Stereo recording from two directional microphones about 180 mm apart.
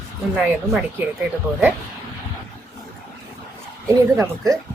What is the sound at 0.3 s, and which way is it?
Speech, 5° right (ahead or behind).